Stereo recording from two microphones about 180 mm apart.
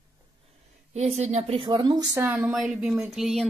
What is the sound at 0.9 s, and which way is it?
A woman's voice, 35° right (ahead or behind).